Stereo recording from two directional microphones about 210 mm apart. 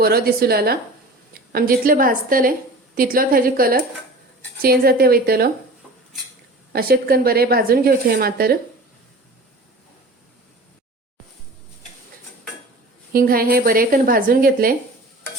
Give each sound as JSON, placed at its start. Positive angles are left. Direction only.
{"t": 0.0, "sound": "a woman's voice", "side_deg": -45}
{"t": 6.7, "sound": "a woman's voice", "side_deg": -45}
{"t": 13.1, "sound": "a woman's voice", "side_deg": -45}